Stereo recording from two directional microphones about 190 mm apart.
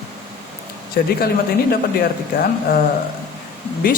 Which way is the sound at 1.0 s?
55° left (ahead or behind).